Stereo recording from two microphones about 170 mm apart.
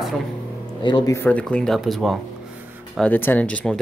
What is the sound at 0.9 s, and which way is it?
Speech, 25° left (ahead or behind).